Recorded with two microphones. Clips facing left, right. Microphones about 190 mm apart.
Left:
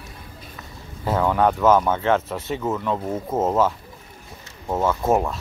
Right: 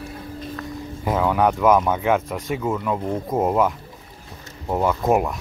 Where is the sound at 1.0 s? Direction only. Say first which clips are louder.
Even; 10° right (ahead or behind).